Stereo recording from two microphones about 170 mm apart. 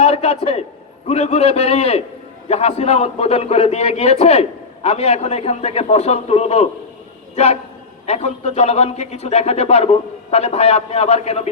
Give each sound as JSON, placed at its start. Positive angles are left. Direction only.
{"t": 0.0, "sound": "a man's voice", "side_deg": 35}